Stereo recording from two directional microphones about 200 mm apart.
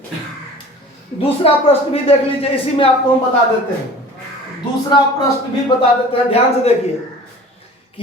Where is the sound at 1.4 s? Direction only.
30° left (ahead or behind).